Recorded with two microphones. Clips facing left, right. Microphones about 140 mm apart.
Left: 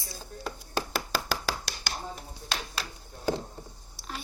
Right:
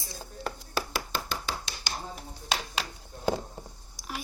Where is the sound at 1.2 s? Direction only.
75° left (ahead or behind).